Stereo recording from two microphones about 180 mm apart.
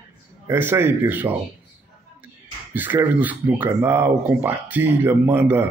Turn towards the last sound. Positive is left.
turn(degrees=-10)  # may be behind; listen again after turning